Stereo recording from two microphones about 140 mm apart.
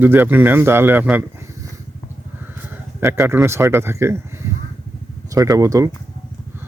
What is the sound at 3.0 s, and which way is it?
Speech, 20° right (ahead or behind).